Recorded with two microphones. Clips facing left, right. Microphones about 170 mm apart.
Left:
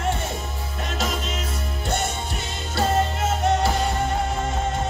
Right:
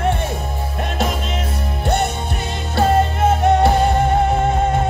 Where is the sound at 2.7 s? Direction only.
55° right (ahead or behind).